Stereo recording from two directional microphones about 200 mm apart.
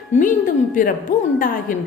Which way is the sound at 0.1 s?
40° left (ahead or behind).